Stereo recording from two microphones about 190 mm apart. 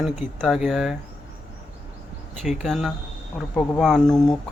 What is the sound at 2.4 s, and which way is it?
Speech, centre (ahead or behind).